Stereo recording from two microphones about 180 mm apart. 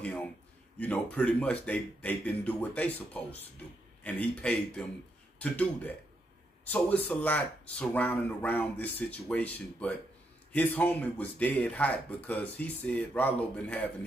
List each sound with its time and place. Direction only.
0.0 s a man's voice: 10° left (ahead or behind)